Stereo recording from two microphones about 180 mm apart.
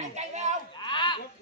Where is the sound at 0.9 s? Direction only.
25° left (ahead or behind).